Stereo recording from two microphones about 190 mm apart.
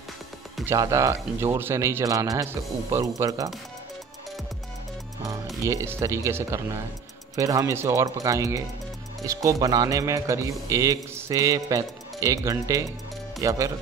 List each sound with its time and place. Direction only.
0.7 s speech: 15° right (ahead or behind)
5.2 s speech: 15° right (ahead or behind)